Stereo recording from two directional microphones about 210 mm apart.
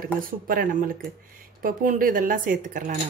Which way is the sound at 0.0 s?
40° right (ahead or behind).